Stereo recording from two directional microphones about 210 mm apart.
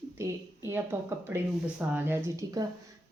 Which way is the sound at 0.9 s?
10° right (ahead or behind).